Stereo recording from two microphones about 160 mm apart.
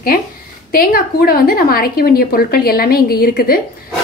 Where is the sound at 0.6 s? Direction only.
65° left (ahead or behind).